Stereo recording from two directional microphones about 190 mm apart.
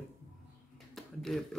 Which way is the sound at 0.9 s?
Centre (ahead or behind).